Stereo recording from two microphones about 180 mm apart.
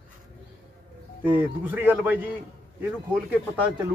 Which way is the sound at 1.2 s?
10° right (ahead or behind).